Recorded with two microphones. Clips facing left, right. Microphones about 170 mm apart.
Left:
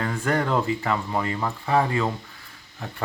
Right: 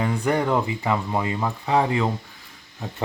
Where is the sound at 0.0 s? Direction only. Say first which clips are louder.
Right 2 dB; 15° right (ahead or behind).